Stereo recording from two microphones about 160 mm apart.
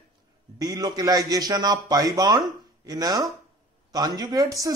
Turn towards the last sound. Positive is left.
turn(degrees=-20)  # may be behind; listen again after turning